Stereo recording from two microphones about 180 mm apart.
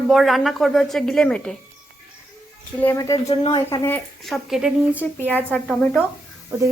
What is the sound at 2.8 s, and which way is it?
Speech, 15° left (ahead or behind).